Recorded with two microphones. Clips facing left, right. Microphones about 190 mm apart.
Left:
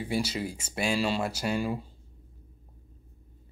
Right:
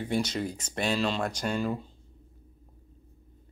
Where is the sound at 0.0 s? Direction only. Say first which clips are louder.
Right 1 dB; 5° left (ahead or behind).